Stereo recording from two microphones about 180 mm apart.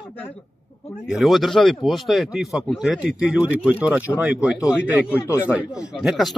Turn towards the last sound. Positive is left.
turn(degrees=0)  # may be behind; listen again after turning